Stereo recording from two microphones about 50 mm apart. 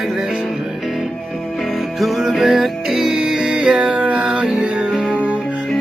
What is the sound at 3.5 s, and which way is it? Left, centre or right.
Music, centre.